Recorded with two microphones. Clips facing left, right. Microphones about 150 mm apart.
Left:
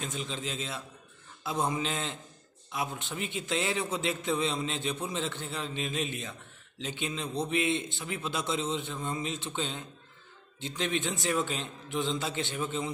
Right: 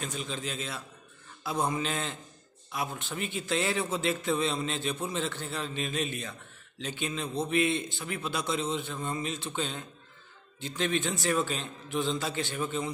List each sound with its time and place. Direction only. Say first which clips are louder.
0.0 s a man's voice: even; 20° left (ahead or behind)